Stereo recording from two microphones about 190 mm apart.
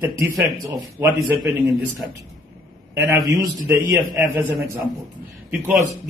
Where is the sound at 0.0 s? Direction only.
15° right (ahead or behind).